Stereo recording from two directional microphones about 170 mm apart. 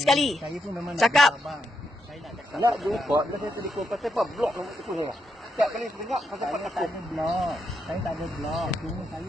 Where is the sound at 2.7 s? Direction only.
Centre (ahead or behind).